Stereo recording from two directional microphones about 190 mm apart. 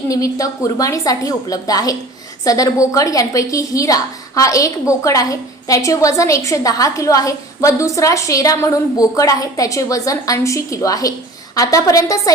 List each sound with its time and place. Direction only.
0.1 s a woman's voice: 15° left (ahead or behind)